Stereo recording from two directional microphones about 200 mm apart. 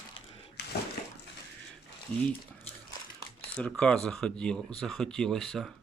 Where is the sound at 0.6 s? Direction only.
55° left (ahead or behind).